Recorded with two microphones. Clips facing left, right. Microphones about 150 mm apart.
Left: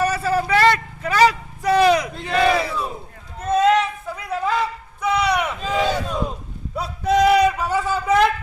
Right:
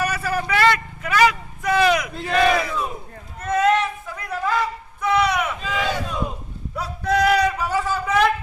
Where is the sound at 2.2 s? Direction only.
25° left (ahead or behind).